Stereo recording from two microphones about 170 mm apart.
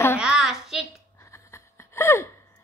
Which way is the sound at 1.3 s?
15° left (ahead or behind).